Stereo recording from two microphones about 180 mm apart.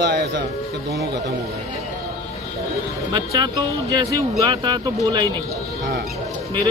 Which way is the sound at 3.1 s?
20° right (ahead or behind).